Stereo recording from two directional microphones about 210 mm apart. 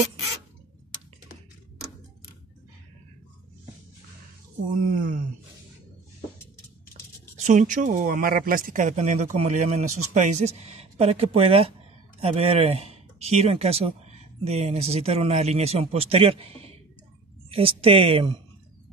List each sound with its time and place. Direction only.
4.6 s speech: 40° right (ahead or behind)
7.3 s speech: 35° right (ahead or behind)